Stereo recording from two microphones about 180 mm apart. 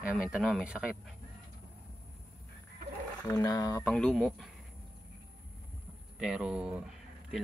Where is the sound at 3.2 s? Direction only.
15° left (ahead or behind).